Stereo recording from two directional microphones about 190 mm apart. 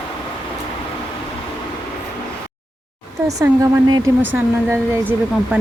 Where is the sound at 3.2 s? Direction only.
15° right (ahead or behind).